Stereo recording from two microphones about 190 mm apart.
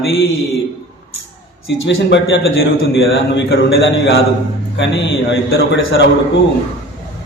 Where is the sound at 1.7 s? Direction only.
70° left (ahead or behind).